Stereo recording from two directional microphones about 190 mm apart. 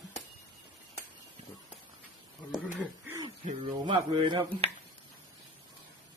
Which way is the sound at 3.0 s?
20° right (ahead or behind).